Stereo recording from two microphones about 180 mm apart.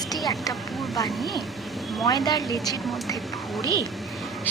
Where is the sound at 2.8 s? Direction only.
Centre (ahead or behind).